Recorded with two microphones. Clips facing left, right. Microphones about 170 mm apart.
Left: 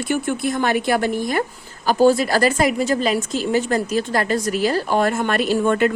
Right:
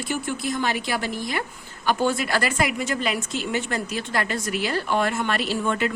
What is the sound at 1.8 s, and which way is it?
Speech, 35° left (ahead or behind).